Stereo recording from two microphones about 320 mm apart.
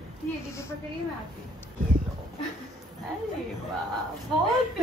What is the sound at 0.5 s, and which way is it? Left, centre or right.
Speech, centre.